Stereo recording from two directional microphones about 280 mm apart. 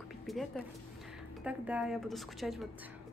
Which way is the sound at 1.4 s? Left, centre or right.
Centre.